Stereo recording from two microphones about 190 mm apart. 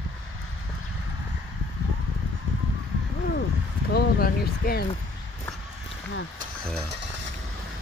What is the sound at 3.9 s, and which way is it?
Speech, 55° left (ahead or behind).